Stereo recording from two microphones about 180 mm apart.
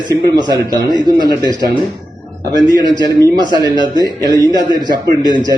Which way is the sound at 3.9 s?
20° right (ahead or behind).